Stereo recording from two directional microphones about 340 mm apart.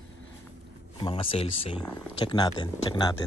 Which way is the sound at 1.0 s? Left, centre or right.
Centre.